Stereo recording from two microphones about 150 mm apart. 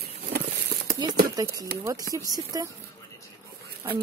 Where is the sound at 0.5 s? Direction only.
85° right.